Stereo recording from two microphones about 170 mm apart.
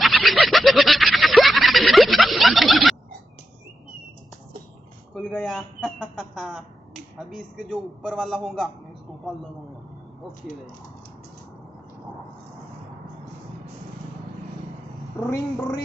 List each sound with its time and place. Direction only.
0.0 s a sound: centre (ahead or behind)
5.1 s a man's voice: centre (ahead or behind)
15.2 s speech: 20° left (ahead or behind)